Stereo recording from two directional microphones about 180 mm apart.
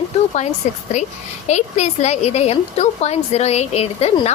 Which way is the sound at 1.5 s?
40° left (ahead or behind).